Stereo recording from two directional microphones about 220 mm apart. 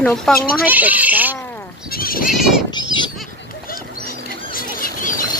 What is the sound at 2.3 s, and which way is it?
Speech, centre (ahead or behind).